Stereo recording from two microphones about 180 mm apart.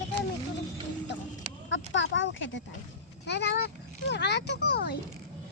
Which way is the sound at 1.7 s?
90° left.